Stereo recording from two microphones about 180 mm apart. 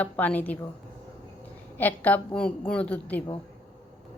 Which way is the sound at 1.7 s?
10° left (ahead or behind).